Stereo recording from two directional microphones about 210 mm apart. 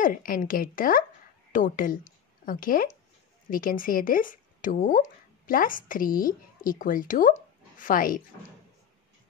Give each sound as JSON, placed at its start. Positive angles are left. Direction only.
{"t": 0.0, "sound": "a woman's voice", "side_deg": 40}